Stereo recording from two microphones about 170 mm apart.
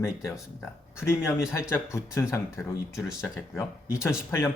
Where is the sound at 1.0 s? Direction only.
15° left (ahead or behind).